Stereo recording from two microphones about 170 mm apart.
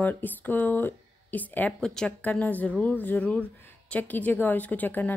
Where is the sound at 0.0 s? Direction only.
10° left (ahead or behind).